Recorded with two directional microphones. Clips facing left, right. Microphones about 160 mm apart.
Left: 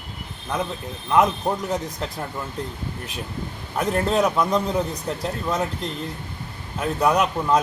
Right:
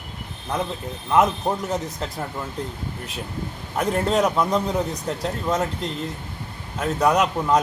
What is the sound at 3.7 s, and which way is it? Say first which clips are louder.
Speech: even; centre (ahead or behind).